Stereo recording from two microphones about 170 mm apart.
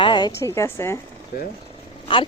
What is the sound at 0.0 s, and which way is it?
Speech, 25° left (ahead or behind).